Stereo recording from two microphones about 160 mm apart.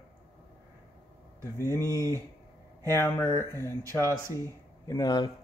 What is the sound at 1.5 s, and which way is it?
A man's voice, 15° left (ahead or behind).